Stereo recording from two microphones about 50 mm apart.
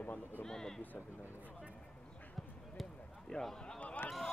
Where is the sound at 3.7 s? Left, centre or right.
Left.